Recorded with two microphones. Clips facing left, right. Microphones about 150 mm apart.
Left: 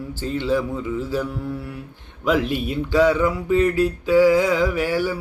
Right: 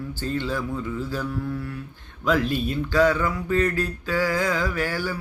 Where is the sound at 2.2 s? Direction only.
20° left (ahead or behind).